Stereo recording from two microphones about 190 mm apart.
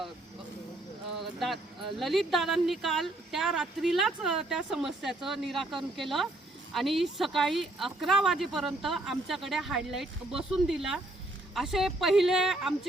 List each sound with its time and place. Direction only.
1.2 s speech: centre (ahead or behind)